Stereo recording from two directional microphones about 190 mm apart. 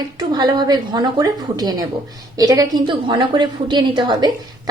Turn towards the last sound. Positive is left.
turn(degrees=-25)  # may be behind; listen again after turning